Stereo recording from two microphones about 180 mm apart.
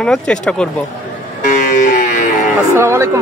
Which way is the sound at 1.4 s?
45° left (ahead or behind).